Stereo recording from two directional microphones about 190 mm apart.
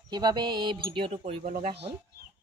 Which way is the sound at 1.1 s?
45° right (ahead or behind).